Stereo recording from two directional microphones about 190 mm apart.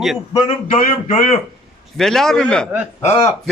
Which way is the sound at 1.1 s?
40° left (ahead or behind).